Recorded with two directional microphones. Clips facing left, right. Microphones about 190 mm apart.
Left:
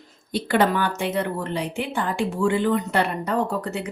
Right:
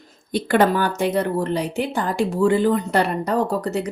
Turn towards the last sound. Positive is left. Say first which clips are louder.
# right 4 dB
turn(degrees=-40)  # may be behind; listen again after turning